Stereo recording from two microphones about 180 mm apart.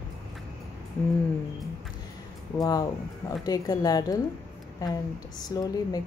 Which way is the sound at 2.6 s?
20° left (ahead or behind).